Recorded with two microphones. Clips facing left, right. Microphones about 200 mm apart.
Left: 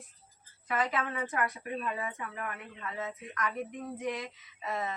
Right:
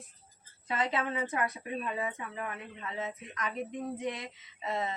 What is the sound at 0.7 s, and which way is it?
A woman's voice, 25° right (ahead or behind).